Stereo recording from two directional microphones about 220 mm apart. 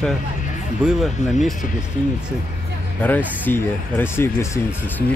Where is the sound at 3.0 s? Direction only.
10° left (ahead or behind).